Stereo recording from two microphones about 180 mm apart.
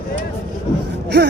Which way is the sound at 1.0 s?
65° right (ahead or behind).